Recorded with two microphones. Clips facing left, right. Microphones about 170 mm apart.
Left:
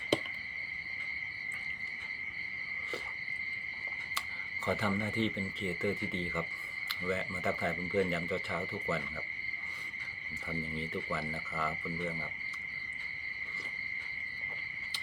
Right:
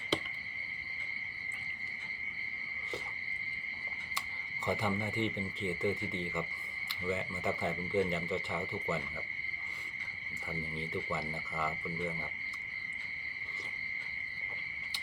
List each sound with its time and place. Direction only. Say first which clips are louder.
4.6 s speech: left 1 dB; 15° right (ahead or behind)
10.6 s speech: even; 15° right (ahead or behind)